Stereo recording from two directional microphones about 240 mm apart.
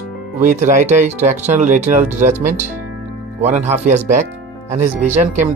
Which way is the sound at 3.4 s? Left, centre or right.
Right.